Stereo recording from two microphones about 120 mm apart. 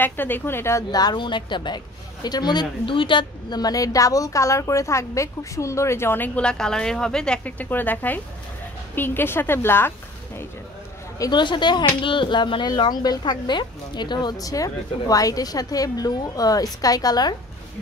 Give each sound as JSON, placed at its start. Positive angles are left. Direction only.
{"t": 0.0, "sound": "a woman's voice", "side_deg": 15}
{"t": 11.1, "sound": "speech", "side_deg": 35}